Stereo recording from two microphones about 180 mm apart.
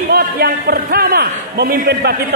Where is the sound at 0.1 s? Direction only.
55° right (ahead or behind).